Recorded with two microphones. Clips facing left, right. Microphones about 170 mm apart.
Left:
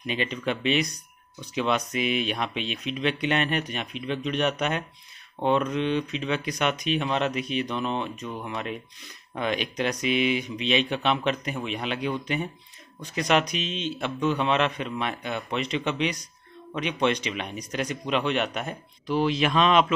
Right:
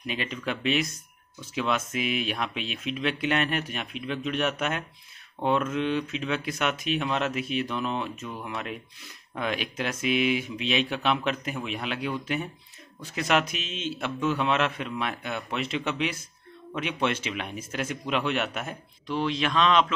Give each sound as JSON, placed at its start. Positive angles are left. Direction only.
{"t": 0.0, "sound": "a man's voice", "side_deg": 0}